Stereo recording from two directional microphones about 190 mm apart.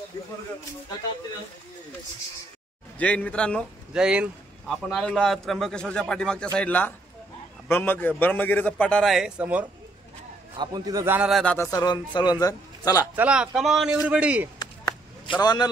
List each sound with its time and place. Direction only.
3.0 s a man's voice: 5° left (ahead or behind)
10.6 s a man's voice: 20° right (ahead or behind); by 11.5 s centre (ahead or behind)
11.5 s a man's voice: 15° left (ahead or behind)
13.1 s a man's voice: 5° right (ahead or behind)
14.6 s a sound: 20° left (ahead or behind)
15.4 s a man's voice: 20° left (ahead or behind)